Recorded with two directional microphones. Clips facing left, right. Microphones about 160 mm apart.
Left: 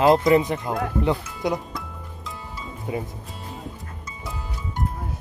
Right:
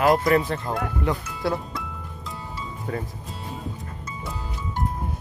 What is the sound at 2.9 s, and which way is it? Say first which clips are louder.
Speech: left 2 dB; 10° left (ahead or behind).